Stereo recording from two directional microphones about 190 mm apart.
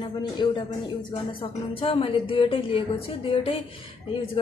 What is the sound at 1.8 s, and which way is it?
A woman's voice, 30° left (ahead or behind).